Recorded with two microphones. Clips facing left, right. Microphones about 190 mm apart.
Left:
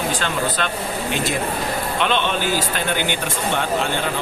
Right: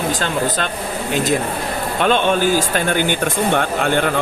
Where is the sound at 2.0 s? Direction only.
45° right (ahead or behind).